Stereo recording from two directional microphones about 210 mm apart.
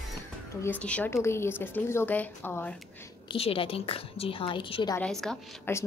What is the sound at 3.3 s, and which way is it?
A woman's voice, 25° left (ahead or behind).